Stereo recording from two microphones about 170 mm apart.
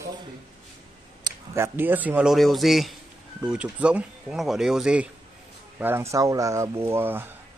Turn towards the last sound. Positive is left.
turn(degrees=-10)  # may be behind; listen again after turning